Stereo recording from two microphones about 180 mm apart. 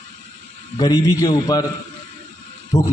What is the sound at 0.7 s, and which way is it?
Speech, 20° left (ahead or behind).